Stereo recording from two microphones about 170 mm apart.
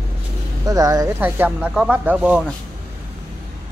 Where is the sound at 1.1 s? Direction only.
10° right (ahead or behind).